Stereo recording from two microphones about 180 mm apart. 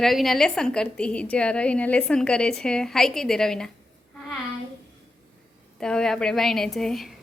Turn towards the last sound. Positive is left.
turn(degrees=0)  # may be behind; listen again after turning